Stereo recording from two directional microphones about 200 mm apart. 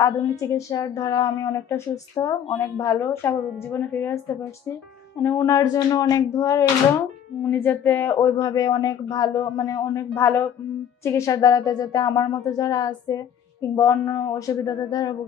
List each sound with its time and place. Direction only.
0.0 s a woman's voice: 15° left (ahead or behind)